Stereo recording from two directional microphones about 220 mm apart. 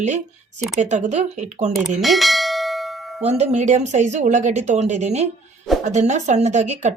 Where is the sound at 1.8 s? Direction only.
Centre (ahead or behind).